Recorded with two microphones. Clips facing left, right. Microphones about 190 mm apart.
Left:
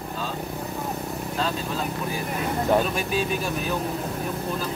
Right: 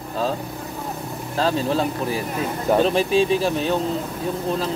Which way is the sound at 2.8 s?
30° right (ahead or behind).